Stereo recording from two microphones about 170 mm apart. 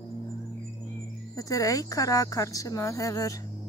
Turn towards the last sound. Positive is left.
turn(degrees=20)  # may be behind; listen again after turning